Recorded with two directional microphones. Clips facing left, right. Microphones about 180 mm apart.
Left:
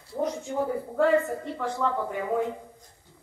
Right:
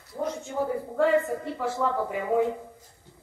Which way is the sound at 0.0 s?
30° left (ahead or behind).